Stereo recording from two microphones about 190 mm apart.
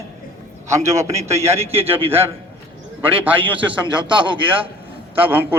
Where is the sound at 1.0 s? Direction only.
35° right (ahead or behind).